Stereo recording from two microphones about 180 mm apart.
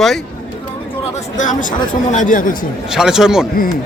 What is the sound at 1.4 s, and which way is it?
Speech, 45° left (ahead or behind).